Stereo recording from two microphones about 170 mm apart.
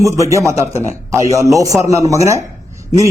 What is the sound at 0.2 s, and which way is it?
A man's voice, 15° right (ahead or behind).